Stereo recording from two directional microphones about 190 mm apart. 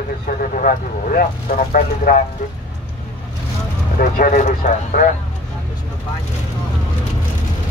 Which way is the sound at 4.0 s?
45° left (ahead or behind).